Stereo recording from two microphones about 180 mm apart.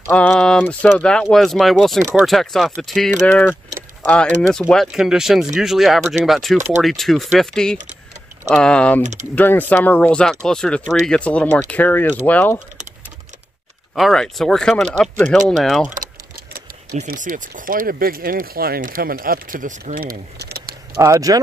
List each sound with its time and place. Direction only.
0.1 s speech: 10° left (ahead or behind)
13.9 s speech: centre (ahead or behind)
16.5 s speech: 55° right (ahead or behind)
21.0 s speech: 20° right (ahead or behind)